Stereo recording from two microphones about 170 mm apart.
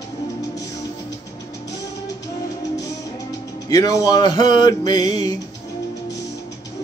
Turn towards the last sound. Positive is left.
turn(degrees=25)  # may be behind; listen again after turning